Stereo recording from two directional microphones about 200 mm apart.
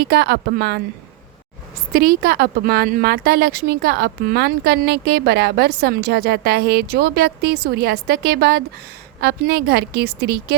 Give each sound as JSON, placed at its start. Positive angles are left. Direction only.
{"t": 0.0, "sound": "a woman's voice", "side_deg": -55}
{"t": 1.9, "sound": "a woman's voice", "side_deg": -45}